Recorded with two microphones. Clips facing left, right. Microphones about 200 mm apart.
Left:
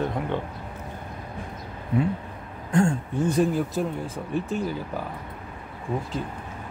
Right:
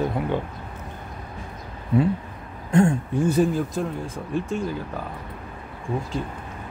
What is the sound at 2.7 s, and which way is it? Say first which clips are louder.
Speech: right 3 dB; 20° right (ahead or behind).